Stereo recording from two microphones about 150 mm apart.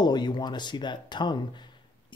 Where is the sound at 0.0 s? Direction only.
30° left (ahead or behind).